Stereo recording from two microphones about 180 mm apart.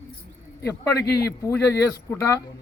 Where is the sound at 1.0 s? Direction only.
65° left (ahead or behind).